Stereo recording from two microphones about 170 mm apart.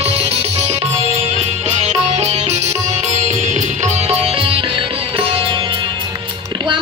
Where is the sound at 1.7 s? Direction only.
40° right (ahead or behind).